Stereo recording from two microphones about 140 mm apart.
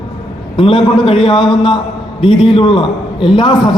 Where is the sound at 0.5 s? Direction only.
40° left (ahead or behind).